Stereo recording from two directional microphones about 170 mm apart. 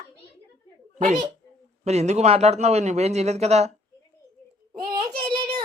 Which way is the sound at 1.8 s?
40° right (ahead or behind).